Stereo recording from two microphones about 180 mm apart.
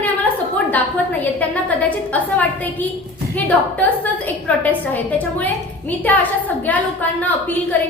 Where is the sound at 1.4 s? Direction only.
10° left (ahead or behind).